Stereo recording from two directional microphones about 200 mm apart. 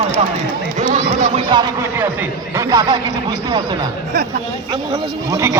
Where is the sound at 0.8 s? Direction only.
35° right (ahead or behind).